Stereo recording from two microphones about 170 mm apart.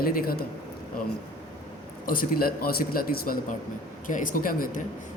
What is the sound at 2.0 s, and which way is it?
A man's voice, 55° left (ahead or behind).